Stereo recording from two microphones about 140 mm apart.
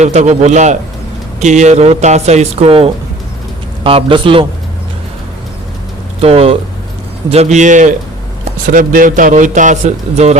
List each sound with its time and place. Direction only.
0.0 s a man's voice: 55° right (ahead or behind); by 4.4 s 35° right (ahead or behind)
6.1 s a man's voice: 45° right (ahead or behind); by 7.9 s 60° right (ahead or behind)
8.6 s a man's voice: 75° right (ahead or behind); by 10.3 s 50° right (ahead or behind)